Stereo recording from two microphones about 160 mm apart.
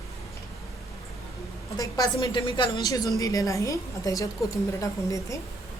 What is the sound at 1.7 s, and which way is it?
A woman's voice, 25° left (ahead or behind).